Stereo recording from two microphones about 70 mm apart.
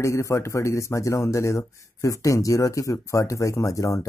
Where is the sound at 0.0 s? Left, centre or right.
Left.